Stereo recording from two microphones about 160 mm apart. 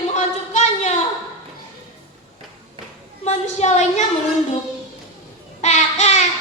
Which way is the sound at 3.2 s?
45° left (ahead or behind).